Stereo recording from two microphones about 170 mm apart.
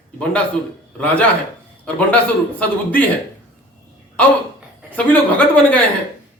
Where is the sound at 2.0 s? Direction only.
10° left (ahead or behind).